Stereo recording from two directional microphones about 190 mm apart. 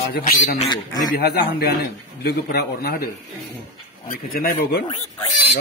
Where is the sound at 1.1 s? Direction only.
50° left (ahead or behind).